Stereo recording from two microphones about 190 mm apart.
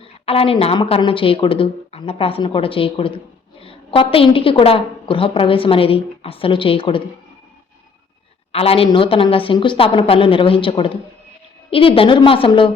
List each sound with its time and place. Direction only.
0.0 s a woman's voice: 30° left (ahead or behind)
8.5 s a woman's voice: 30° left (ahead or behind)